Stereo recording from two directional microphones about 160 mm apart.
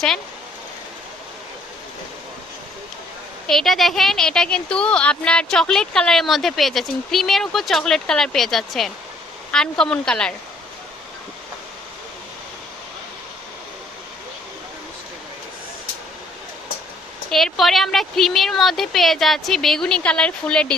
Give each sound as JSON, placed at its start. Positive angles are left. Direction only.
{"t": 3.4, "sound": "a woman's voice", "side_deg": 0}
{"t": 17.3, "sound": "a woman's voice", "side_deg": 0}